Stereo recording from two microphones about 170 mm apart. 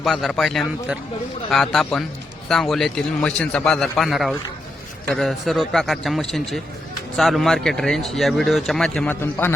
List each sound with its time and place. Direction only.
0.0 s speech: centre (ahead or behind)